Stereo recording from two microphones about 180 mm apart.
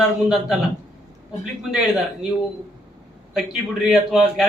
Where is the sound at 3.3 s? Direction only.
Centre (ahead or behind).